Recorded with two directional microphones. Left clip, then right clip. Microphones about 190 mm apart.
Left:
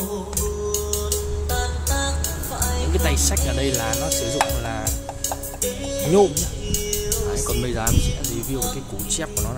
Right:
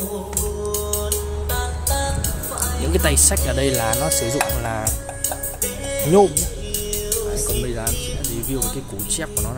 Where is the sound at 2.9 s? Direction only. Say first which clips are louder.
Right 5 dB; 15° right (ahead or behind).